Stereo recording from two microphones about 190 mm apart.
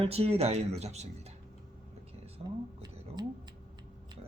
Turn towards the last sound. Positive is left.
turn(degrees=-20)  # may be behind; listen again after turning